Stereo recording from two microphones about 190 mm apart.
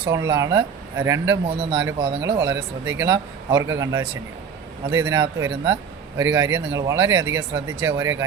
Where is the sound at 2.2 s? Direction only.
15° right (ahead or behind).